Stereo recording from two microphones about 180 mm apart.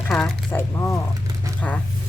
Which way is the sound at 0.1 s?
10° left (ahead or behind).